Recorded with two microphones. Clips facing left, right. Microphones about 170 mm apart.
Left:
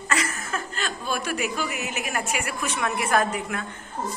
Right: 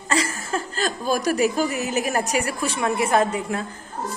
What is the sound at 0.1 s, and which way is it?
A woman's voice, 30° right (ahead or behind).